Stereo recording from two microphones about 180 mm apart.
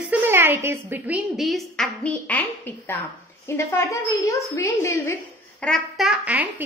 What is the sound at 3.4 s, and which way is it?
A woman's voice, 15° left (ahead or behind).